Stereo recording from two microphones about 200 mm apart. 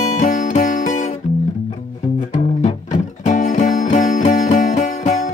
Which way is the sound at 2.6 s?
40° left (ahead or behind).